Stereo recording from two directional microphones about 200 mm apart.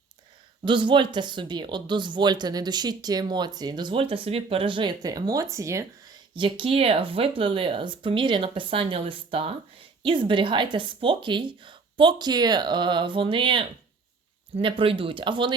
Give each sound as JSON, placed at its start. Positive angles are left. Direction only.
{"t": 0.6, "sound": "speech", "side_deg": -25}